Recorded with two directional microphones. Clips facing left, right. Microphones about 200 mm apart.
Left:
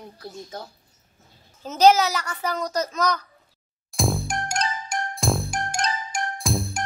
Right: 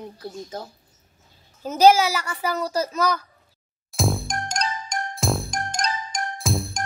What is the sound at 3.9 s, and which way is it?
Music, centre (ahead or behind).